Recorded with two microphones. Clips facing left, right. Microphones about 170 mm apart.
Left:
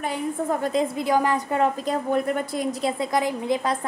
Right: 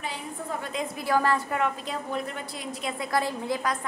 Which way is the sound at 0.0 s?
50° left (ahead or behind).